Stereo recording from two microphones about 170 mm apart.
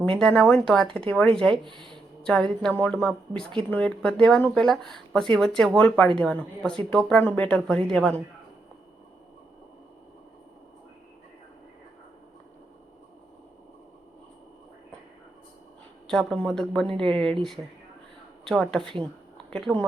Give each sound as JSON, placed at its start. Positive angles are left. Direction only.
{"t": 0.2, "sound": "speech", "side_deg": 5}
{"t": 1.6, "sound": "speech", "side_deg": -30}
{"t": 2.2, "sound": "speech", "side_deg": 5}
{"t": 16.0, "sound": "speech", "side_deg": 5}